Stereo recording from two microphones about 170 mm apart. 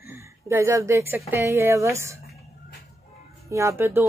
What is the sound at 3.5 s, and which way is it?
Speech, 15° right (ahead or behind).